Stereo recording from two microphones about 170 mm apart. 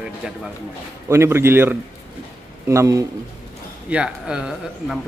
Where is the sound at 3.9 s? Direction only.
5° right (ahead or behind).